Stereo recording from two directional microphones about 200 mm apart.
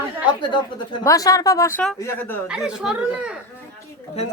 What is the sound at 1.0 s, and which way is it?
A woman's voice, 15° left (ahead or behind).